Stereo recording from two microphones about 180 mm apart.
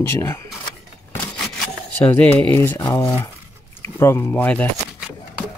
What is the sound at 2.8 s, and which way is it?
Speech, 15° left (ahead or behind).